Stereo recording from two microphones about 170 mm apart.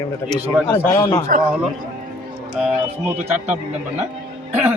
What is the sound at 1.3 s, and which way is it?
Speech, 55° right (ahead or behind).